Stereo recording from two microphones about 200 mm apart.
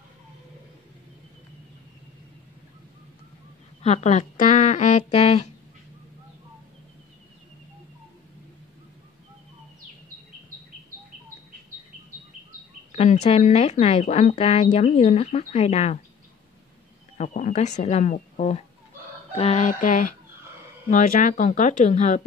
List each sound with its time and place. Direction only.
3.8 s speech: 35° left (ahead or behind)
12.9 s speech: 35° left (ahead or behind)
17.2 s speech: 40° left (ahead or behind)